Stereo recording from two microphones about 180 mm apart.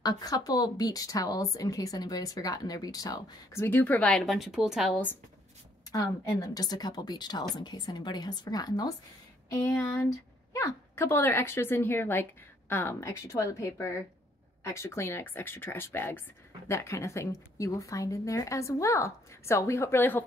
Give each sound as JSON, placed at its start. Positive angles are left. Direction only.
{"t": 0.0, "sound": "speech", "side_deg": 20}
{"t": 5.9, "sound": "speech", "side_deg": 20}